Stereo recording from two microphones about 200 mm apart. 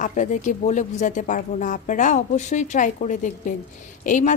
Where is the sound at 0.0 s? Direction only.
40° left (ahead or behind).